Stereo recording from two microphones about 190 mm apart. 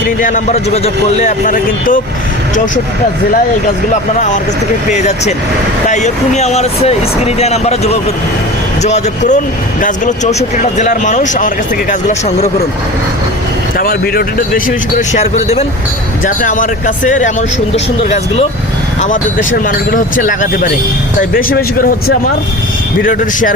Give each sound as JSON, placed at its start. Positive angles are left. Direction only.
{"t": 0.2, "sound": "speech", "side_deg": 40}
{"t": 4.9, "sound": "speech", "side_deg": 35}
{"t": 13.7, "sound": "speech", "side_deg": 50}
{"t": 16.2, "sound": "speech", "side_deg": 45}
{"t": 19.0, "sound": "speech", "side_deg": 40}